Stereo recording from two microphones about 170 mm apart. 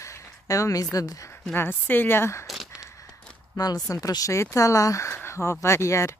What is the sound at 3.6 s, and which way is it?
Speech, 20° left (ahead or behind).